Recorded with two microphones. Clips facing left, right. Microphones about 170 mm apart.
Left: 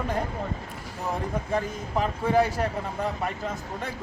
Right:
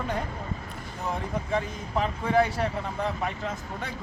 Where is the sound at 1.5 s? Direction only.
5° left (ahead or behind).